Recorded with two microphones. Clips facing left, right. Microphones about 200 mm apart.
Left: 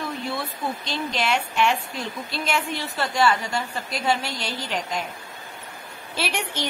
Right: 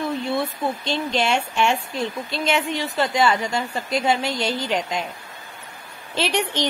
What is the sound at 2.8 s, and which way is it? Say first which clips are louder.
A woman's voice: right 2 dB; 20° right (ahead or behind).